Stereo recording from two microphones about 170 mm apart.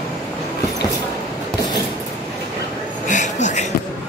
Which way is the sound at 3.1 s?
45° left (ahead or behind).